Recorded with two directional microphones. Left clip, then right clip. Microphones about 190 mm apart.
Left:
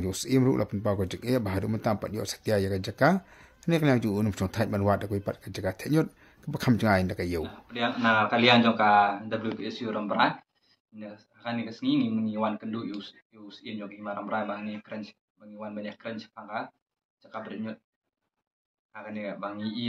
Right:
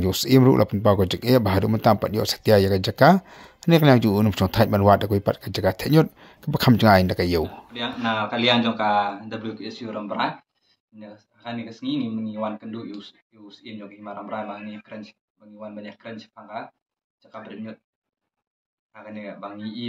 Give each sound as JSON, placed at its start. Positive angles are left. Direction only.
{"t": 0.0, "sound": "speech", "side_deg": -30}
{"t": 7.7, "sound": "a man's voice", "side_deg": 0}
{"t": 18.9, "sound": "a man's voice", "side_deg": 0}